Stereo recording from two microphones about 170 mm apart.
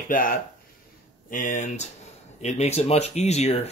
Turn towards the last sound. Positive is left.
turn(degrees=40)  # may be behind; listen again after turning